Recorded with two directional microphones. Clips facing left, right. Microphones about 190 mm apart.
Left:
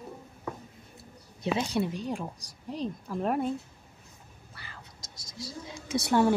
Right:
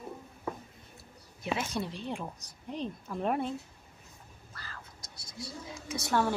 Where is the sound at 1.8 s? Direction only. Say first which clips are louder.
Left 6 dB; 45° left (ahead or behind).